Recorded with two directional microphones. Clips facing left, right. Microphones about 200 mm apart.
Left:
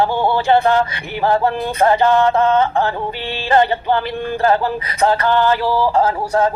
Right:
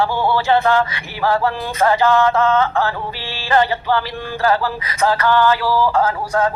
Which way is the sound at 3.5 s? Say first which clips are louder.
Left 1 dB; 20° left (ahead or behind).